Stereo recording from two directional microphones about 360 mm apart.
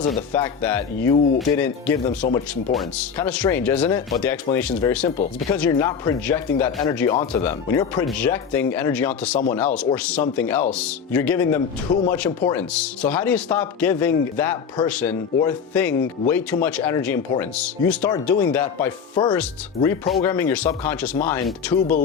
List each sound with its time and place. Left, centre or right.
0.1 s speech: centre